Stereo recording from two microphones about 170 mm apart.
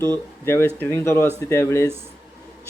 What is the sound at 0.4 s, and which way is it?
Speech, 15° left (ahead or behind).